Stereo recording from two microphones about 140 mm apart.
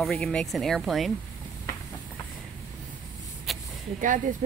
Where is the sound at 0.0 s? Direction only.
5° left (ahead or behind).